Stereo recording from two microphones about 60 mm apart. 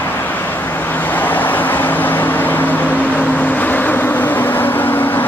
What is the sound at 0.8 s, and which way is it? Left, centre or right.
Vehicle, left.